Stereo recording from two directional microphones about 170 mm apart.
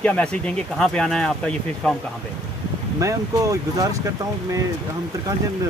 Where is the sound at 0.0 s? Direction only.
5° left (ahead or behind).